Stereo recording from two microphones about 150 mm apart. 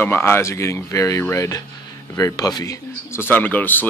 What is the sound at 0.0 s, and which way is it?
Speech, 15° left (ahead or behind).